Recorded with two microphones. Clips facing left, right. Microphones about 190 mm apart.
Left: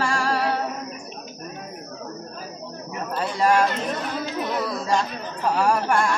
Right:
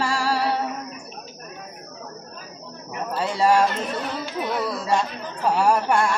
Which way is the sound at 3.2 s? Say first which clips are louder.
Right 1 dB; 25° right (ahead or behind).